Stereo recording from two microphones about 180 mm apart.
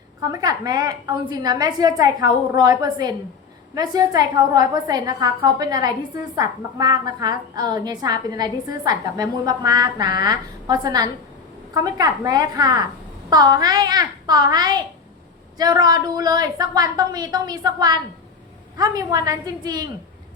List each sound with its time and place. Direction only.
0.2 s a woman's voice: 20° right (ahead or behind)